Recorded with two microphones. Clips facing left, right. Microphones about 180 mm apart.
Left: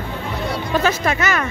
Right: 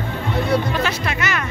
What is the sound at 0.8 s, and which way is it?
Speech, 45° left (ahead or behind).